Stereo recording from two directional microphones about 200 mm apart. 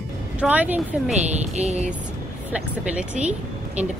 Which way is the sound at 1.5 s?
35° right (ahead or behind).